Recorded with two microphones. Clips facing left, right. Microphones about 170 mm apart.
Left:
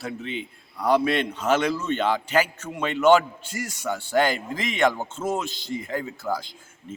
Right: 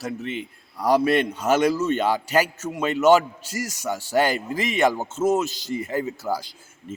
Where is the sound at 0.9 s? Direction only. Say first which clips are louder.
Right 3 dB; 45° right (ahead or behind).